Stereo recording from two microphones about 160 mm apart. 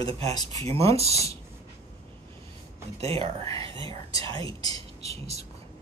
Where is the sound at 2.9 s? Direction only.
40° right (ahead or behind).